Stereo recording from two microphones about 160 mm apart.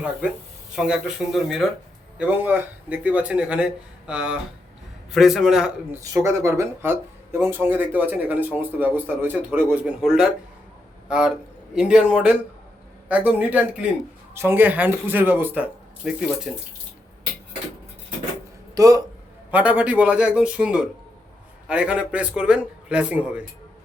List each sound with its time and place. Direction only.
0.8 s a man's voice: 5° right (ahead or behind)
5.9 s a man's voice: 15° right (ahead or behind)
18.7 s speech: 20° right (ahead or behind)
19.5 s speech: 10° right (ahead or behind)